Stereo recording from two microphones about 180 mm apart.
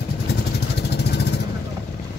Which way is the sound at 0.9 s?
65° left (ahead or behind).